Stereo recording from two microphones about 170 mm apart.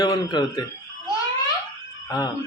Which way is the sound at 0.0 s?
25° left (ahead or behind).